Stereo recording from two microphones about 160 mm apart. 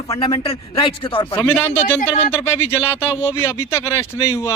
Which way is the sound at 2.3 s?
15° left (ahead or behind).